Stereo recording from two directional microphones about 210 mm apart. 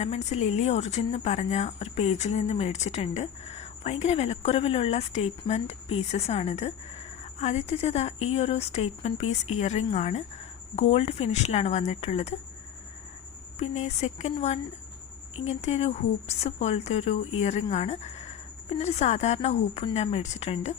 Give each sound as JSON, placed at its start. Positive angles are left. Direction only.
{"t": 0.0, "sound": "a woman's voice", "side_deg": 30}
{"t": 13.6, "sound": "a woman's voice", "side_deg": 30}